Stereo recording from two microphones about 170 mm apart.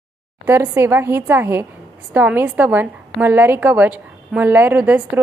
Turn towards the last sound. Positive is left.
turn(degrees=-10)  # may be behind; listen again after turning